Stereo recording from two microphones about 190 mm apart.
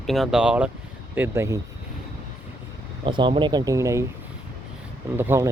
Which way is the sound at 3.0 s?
25° right (ahead or behind).